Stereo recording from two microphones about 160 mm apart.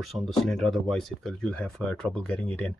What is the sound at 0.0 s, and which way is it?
Speech, centre (ahead or behind).